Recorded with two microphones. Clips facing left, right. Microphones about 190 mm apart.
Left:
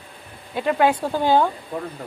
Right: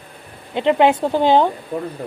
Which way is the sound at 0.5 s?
25° right (ahead or behind).